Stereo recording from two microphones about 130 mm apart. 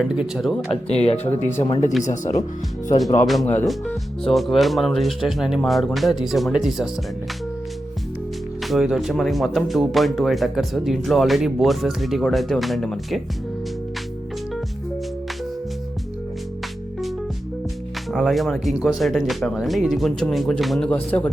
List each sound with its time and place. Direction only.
0.0 s speech: 5° right (ahead or behind)
0.7 s speech: 50° left (ahead or behind); by 2.4 s 70° left (ahead or behind)
3.4 s speech: 20° left (ahead or behind)
3.8 s speech: centre (ahead or behind)
8.6 s speech: centre (ahead or behind)
18.1 s speech: centre (ahead or behind)